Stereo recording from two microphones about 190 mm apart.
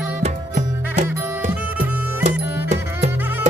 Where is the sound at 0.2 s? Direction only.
40° right (ahead or behind).